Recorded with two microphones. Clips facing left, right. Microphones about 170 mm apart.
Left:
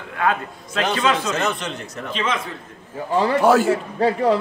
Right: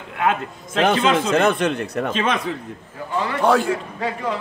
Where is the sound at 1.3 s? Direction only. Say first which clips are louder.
Right 6 dB; 55° right (ahead or behind).